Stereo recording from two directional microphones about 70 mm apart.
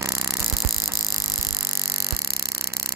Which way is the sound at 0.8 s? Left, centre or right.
Right.